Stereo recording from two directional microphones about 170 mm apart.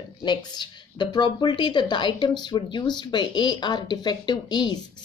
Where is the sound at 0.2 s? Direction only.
25° left (ahead or behind).